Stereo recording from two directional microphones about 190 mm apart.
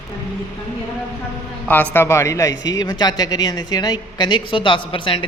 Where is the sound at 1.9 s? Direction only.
15° left (ahead or behind).